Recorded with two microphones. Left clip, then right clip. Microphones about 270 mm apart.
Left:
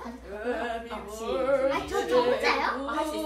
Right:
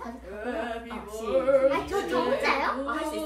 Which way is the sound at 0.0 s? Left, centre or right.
Centre.